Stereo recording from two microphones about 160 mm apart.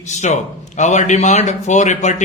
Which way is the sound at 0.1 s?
50° left (ahead or behind).